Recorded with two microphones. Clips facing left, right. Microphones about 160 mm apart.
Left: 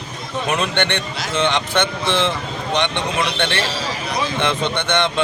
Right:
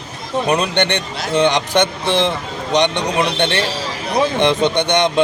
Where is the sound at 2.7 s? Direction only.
15° right (ahead or behind).